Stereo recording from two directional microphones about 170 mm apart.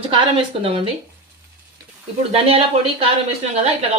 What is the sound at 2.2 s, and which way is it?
Speech, 35° right (ahead or behind).